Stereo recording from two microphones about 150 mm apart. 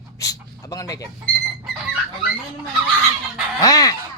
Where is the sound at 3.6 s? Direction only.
25° left (ahead or behind).